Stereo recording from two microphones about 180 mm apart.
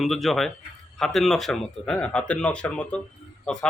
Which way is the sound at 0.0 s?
Centre (ahead or behind).